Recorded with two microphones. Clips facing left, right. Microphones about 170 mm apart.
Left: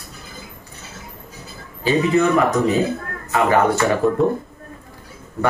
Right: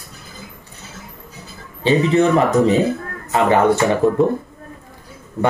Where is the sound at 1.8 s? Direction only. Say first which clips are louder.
Right 2 dB; 30° right (ahead or behind).